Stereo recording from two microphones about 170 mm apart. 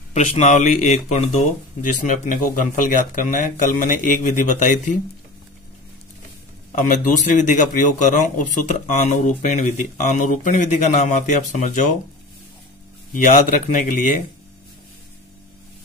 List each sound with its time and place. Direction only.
0.1 s speech: 45° left (ahead or behind)
6.9 s speech: 50° left (ahead or behind)
13.1 s speech: 50° left (ahead or behind)